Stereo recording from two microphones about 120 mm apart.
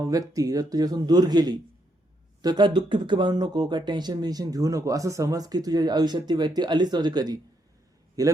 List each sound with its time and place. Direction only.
0.0 s a man's voice: 30° right (ahead or behind)